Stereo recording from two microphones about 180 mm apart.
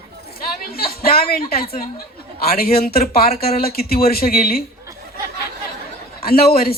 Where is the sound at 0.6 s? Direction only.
55° left (ahead or behind).